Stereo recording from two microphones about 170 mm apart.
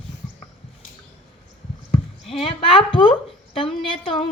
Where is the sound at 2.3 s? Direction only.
35° left (ahead or behind).